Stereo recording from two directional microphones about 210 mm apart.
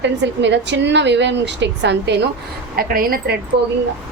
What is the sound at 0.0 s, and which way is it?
A woman's voice, 55° right (ahead or behind).